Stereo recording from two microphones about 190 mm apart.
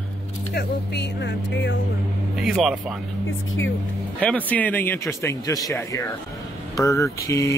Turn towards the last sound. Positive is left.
turn(degrees=15)  # may be behind; listen again after turning